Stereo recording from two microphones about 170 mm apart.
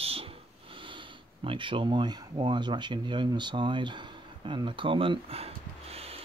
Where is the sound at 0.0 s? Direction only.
35° right (ahead or behind).